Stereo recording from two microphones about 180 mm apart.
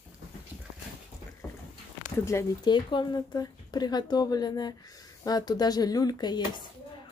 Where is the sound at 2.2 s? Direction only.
15° left (ahead or behind).